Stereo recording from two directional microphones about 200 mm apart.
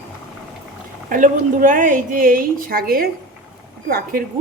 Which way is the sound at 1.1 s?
40° right (ahead or behind).